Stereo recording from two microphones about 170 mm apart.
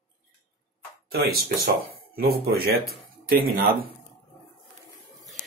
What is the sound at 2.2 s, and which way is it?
Speech, 65° right (ahead or behind).